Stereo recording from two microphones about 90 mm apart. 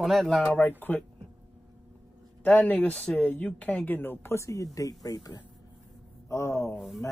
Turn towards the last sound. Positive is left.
turn(degrees=30)  # may be behind; listen again after turning